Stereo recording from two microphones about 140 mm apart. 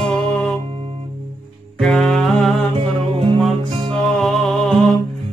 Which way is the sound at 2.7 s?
40° right (ahead or behind).